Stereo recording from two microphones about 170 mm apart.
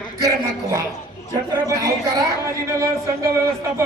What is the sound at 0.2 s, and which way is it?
A woman's voice, 20° right (ahead or behind).